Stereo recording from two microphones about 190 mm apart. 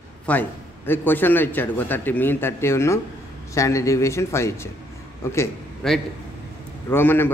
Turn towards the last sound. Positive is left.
turn(degrees=10)  # may be behind; listen again after turning